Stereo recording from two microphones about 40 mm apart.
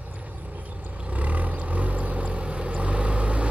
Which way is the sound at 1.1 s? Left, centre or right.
Right.